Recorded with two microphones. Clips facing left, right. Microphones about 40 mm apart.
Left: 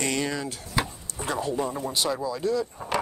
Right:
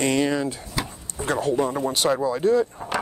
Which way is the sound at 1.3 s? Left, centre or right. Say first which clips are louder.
Right 5 dB; right.